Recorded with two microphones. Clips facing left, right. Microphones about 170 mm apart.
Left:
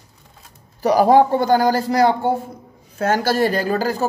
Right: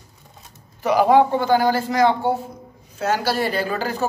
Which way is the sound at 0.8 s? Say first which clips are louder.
Left 2 dB; 40° left (ahead or behind).